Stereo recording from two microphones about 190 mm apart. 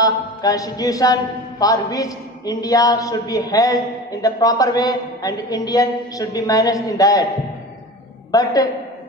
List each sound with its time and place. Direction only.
0.0 s a man's voice: 20° left (ahead or behind)
8.3 s a man's voice: 20° left (ahead or behind)